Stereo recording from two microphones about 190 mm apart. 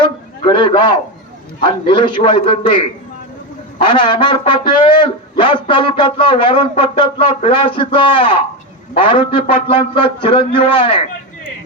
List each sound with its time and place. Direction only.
0.4 s music: 25° left (ahead or behind)